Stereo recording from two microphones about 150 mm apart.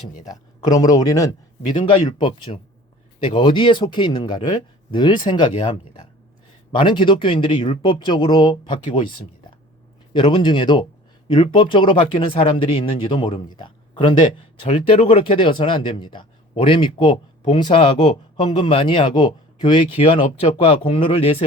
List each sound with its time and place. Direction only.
0.3 s speech: 25° left (ahead or behind)
10.1 s speech: 35° left (ahead or behind)